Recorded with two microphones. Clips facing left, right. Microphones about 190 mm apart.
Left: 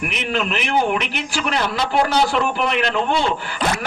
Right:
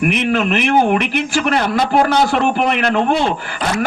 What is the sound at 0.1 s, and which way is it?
A man's voice, 55° right (ahead or behind).